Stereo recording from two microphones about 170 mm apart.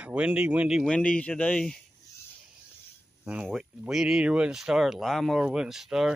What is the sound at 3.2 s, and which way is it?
Speech, 5° right (ahead or behind).